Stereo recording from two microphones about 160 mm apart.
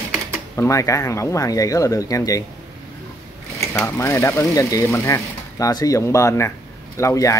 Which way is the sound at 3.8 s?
15° left (ahead or behind).